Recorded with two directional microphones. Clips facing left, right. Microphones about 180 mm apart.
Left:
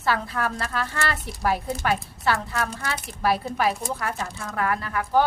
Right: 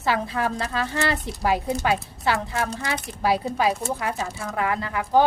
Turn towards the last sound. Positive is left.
turn(degrees=-15)  # may be behind; listen again after turning